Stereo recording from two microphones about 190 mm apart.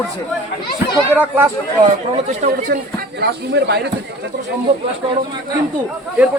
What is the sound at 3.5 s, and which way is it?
Speech, 60° right (ahead or behind).